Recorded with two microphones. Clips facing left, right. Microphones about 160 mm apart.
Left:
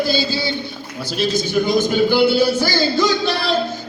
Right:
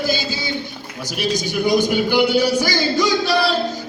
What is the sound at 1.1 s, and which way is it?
A man's voice, 15° right (ahead or behind).